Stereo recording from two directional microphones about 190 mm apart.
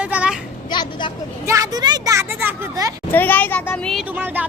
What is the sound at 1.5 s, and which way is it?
Speech, 20° right (ahead or behind).